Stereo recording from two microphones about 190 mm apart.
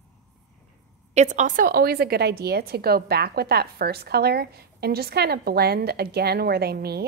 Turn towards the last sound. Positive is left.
turn(degrees=-55)  # may be behind; listen again after turning